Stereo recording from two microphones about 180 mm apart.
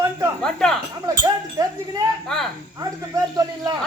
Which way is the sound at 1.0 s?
20° right (ahead or behind).